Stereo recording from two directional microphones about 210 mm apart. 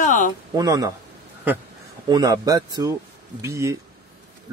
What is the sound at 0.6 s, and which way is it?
Speech, 15° right (ahead or behind).